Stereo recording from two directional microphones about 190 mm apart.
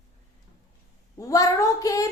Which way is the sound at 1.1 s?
15° left (ahead or behind).